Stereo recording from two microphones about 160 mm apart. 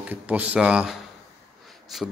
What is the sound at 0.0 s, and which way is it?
Speech, 10° right (ahead or behind).